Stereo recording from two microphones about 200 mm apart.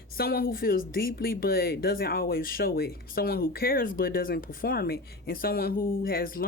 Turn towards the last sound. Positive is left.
turn(degrees=45)  # may be behind; listen again after turning